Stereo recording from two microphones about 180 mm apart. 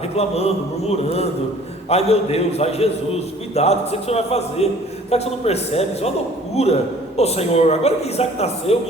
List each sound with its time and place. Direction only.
0.2 s a man's voice: 35° left (ahead or behind)